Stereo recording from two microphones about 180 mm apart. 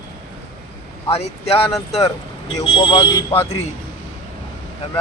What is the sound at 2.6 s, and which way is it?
Speech, 30° left (ahead or behind).